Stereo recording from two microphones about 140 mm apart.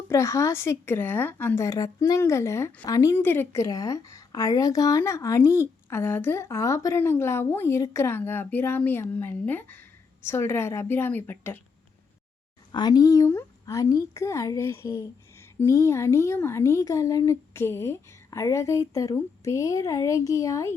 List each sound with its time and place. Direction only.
0.1 s a woman's voice: 20° left (ahead or behind)
12.7 s a woman's voice: 30° left (ahead or behind)